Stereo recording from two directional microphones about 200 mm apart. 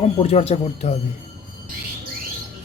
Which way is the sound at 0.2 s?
30° left (ahead or behind).